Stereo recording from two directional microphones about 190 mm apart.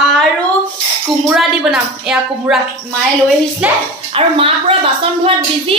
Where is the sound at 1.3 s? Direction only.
5° right (ahead or behind).